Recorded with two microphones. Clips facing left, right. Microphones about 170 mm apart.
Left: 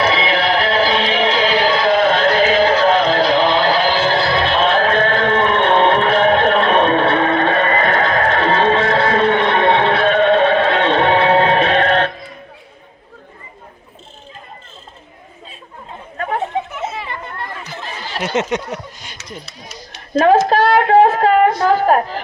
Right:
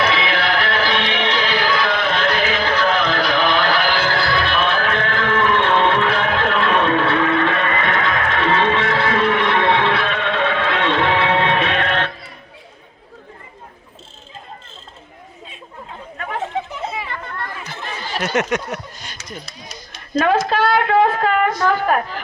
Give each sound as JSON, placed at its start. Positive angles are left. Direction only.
{"t": 0.0, "sound": "music", "side_deg": 30}
{"t": 16.1, "sound": "chatter", "side_deg": 40}
{"t": 17.1, "sound": "children playing", "side_deg": 20}
{"t": 18.2, "sound": "a sound", "side_deg": 20}
{"t": 20.1, "sound": "speech", "side_deg": 35}